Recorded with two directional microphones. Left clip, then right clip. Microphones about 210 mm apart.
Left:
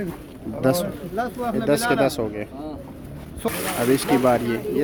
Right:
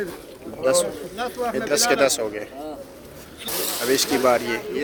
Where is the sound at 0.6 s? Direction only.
15° left (ahead or behind).